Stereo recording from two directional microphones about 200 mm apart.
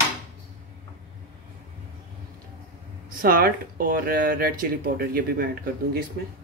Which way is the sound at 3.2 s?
45° right (ahead or behind).